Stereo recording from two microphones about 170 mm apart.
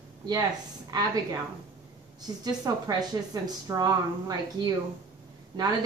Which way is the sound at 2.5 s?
20° right (ahead or behind).